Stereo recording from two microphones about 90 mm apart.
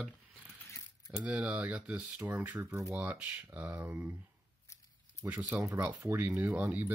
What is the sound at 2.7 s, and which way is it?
Speech, 35° right (ahead or behind).